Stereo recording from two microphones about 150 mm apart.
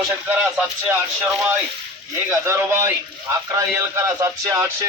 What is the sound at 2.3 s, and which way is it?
Music, 20° right (ahead or behind).